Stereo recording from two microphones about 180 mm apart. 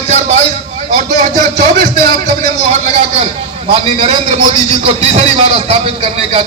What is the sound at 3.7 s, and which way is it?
A man's voice, 35° right (ahead or behind).